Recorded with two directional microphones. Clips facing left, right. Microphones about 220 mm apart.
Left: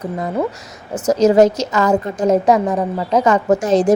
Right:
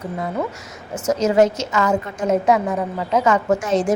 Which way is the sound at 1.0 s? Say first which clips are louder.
Left 5 dB; 35° left (ahead or behind).